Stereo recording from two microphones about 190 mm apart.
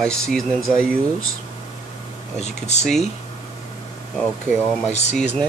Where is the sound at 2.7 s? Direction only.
35° left (ahead or behind).